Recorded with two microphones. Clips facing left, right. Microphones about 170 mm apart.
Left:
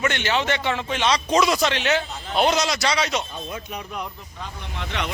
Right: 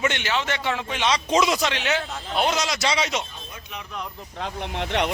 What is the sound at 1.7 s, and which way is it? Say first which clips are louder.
A man's voice: left 3 dB; 5° right (ahead or behind).